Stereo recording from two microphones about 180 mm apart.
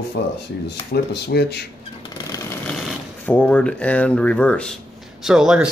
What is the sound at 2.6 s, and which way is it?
Speech, 5° left (ahead or behind).